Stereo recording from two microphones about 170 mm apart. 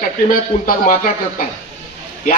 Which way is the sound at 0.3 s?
55° left (ahead or behind).